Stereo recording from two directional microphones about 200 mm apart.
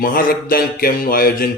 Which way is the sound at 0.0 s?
45° left (ahead or behind).